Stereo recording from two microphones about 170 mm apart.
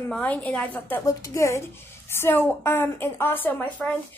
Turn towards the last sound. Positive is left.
turn(degrees=10)  # may be behind; listen again after turning